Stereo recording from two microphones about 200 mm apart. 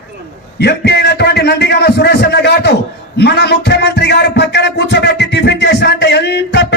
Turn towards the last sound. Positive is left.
turn(degrees=55)  # may be behind; listen again after turning